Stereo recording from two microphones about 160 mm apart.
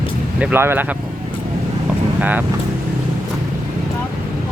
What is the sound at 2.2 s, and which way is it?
Speech, 10° right (ahead or behind).